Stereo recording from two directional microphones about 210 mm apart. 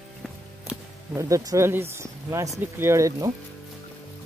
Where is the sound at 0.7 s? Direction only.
15° right (ahead or behind).